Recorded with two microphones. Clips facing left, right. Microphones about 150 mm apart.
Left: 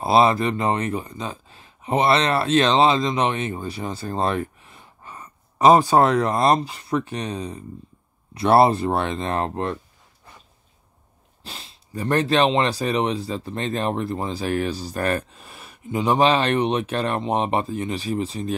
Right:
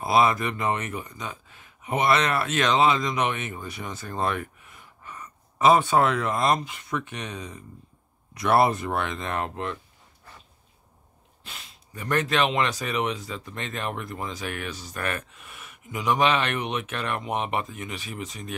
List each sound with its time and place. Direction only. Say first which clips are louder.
0.0 s speech: left 4 dB; 30° left (ahead or behind)
11.4 s speech: left 5 dB; 30° left (ahead or behind)